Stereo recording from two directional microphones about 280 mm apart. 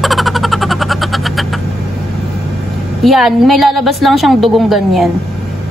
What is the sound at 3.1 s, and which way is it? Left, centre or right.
A woman's voice, centre.